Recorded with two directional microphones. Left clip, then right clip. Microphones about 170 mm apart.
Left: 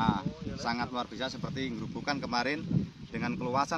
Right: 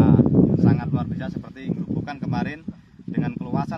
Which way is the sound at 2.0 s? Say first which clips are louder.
Left 3 dB; 30° right (ahead or behind).